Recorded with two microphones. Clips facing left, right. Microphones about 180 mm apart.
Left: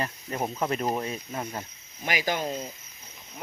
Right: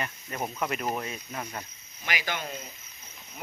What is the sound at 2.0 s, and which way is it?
Speech, 40° left (ahead or behind).